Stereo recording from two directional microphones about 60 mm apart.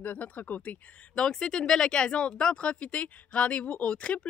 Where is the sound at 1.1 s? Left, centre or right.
Centre.